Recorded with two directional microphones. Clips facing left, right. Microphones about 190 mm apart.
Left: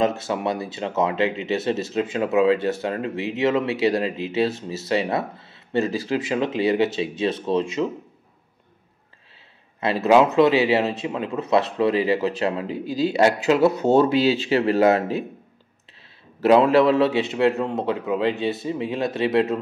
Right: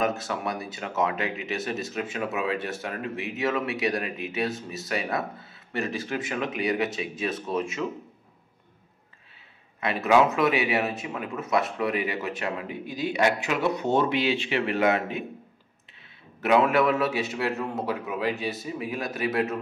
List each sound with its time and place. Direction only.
0.2 s speech: 25° left (ahead or behind)
9.8 s a man's voice: 30° left (ahead or behind)
16.3 s speech: 30° left (ahead or behind)